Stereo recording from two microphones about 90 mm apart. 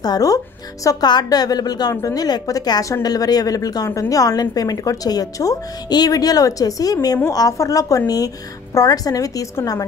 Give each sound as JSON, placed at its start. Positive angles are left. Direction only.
{"t": 0.0, "sound": "a woman's voice", "side_deg": 45}